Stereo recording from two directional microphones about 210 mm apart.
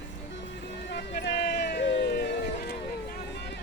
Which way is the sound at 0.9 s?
55° left (ahead or behind).